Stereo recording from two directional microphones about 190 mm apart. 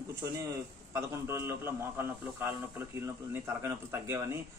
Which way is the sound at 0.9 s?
15° right (ahead or behind).